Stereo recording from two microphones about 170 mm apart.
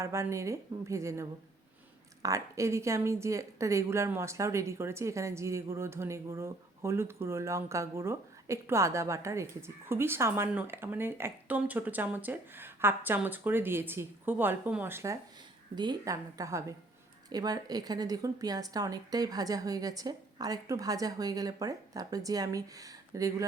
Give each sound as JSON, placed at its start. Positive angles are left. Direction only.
{"t": 0.0, "sound": "speech", "side_deg": -15}
{"t": 15.7, "sound": "a woman's voice", "side_deg": -25}